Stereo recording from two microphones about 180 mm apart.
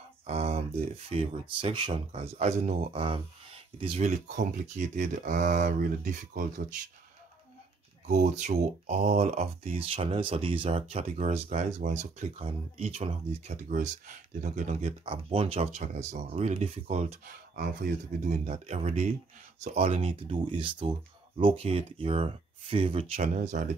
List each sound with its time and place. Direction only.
0.3 s speech: 35° right (ahead or behind)
8.1 s speech: 40° right (ahead or behind)
18.2 s speech: 40° right (ahead or behind)